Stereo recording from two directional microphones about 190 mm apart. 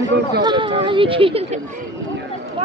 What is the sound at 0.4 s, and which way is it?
Speech, 25° right (ahead or behind).